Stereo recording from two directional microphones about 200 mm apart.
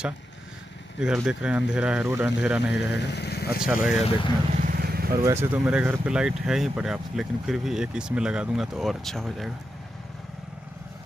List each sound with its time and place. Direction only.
0.9 s speech: 5° right (ahead or behind)
3.1 s speech: 55° left (ahead or behind)
3.6 s speech: 5° right (ahead or behind)
4.5 s vehicle: 40° right (ahead or behind)
5.1 s speech: 15° right (ahead or behind); by 9.5 s centre (ahead or behind)